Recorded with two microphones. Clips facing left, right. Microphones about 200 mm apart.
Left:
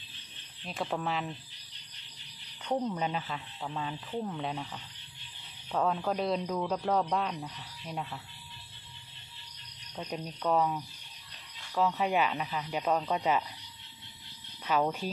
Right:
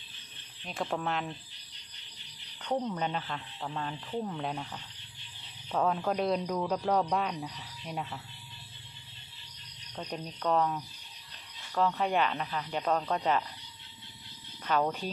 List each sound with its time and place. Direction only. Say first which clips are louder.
0.6 s speech: even; 5° left (ahead or behind)
2.6 s speech: even; 5° left (ahead or behind)
9.9 s speech: left 1 dB; 5° left (ahead or behind)
14.6 s speech: even; 5° left (ahead or behind)